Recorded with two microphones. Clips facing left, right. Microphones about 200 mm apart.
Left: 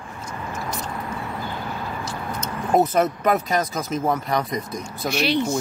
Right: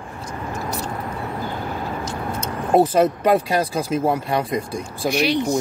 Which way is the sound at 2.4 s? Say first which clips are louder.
Right 3 dB; 30° right (ahead or behind).